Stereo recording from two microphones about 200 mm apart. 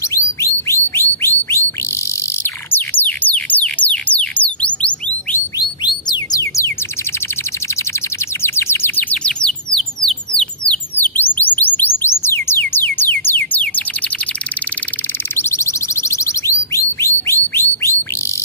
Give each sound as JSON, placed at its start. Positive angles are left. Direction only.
{"t": 0.9, "sound": "bird", "side_deg": 10}
{"t": 2.7, "sound": "music", "side_deg": 10}
{"t": 5.6, "sound": "bird", "side_deg": 20}
{"t": 8.4, "sound": "bird", "side_deg": 10}
{"t": 15.3, "sound": "a sound", "side_deg": 15}